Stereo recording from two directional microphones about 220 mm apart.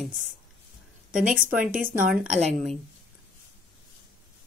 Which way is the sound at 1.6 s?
40° right (ahead or behind).